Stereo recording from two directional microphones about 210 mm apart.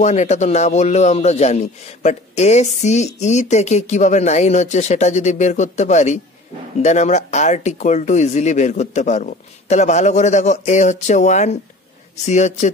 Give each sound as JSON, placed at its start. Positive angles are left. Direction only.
{"t": 0.0, "sound": "speech", "side_deg": 35}